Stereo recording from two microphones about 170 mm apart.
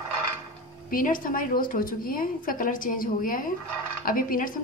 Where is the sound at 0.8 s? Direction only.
55° left (ahead or behind).